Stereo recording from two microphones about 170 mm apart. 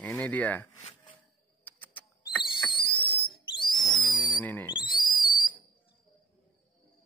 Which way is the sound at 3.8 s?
25° left (ahead or behind).